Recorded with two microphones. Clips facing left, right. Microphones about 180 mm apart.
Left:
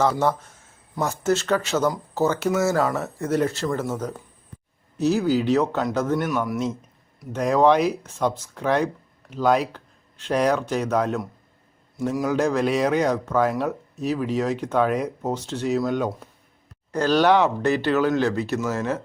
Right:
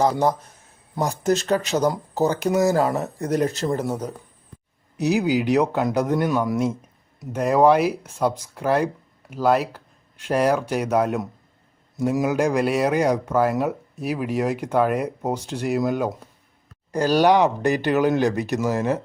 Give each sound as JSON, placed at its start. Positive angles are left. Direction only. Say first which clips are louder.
{"t": 0.1, "sound": "speech", "louder": "right 1 dB", "side_deg": -15}
{"t": 2.9, "sound": "speech", "louder": "right 2 dB", "side_deg": -35}
{"t": 3.2, "sound": "speech", "louder": "even", "side_deg": -15}
{"t": 3.7, "sound": "speech", "louder": "right 2 dB", "side_deg": -35}
{"t": 4.9, "sound": "speech", "louder": "even", "side_deg": -15}
{"t": 7.3, "sound": "speech", "louder": "right 1 dB", "side_deg": -10}